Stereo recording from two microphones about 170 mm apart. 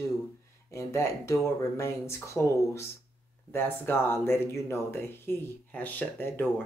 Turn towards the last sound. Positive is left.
turn(degrees=10)  # may be behind; listen again after turning